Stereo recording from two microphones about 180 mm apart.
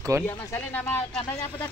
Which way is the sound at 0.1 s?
15° right (ahead or behind).